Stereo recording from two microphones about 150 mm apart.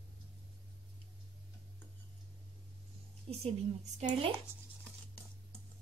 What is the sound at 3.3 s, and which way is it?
A woman's voice, 45° right (ahead or behind).